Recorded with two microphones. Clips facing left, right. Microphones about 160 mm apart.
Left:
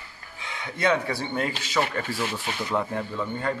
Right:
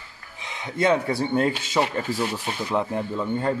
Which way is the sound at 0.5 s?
25° right (ahead or behind).